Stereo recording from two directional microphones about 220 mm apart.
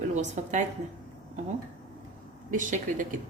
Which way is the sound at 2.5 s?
35° right (ahead or behind).